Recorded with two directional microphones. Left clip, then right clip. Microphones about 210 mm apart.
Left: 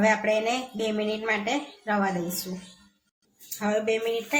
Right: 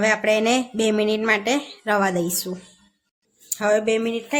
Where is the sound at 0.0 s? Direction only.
45° right (ahead or behind).